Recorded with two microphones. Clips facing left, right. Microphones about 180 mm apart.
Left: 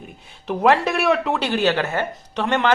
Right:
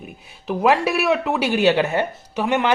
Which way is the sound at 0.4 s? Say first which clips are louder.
Even; 5° right (ahead or behind).